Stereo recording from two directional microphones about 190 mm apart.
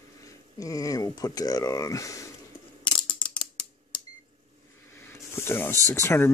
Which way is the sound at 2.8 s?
25° left (ahead or behind).